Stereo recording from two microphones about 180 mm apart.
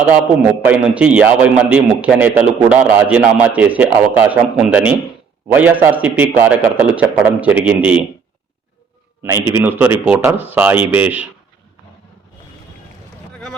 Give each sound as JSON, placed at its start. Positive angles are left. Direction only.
{"t": 0.6, "sound": "a man's voice", "side_deg": -10}
{"t": 9.2, "sound": "a man's voice", "side_deg": -15}